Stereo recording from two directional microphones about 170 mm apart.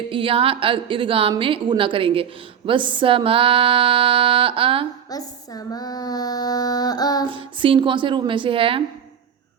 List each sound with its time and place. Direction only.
0.1 s a sound: 30° right (ahead or behind)
5.0 s female singing: 20° left (ahead or behind)
7.3 s a woman's voice: 30° right (ahead or behind)